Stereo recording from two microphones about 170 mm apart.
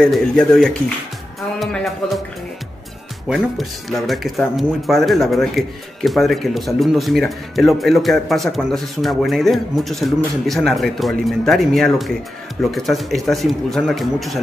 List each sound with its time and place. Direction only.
0.0 s speech: 5° left (ahead or behind)
3.3 s speech: centre (ahead or behind)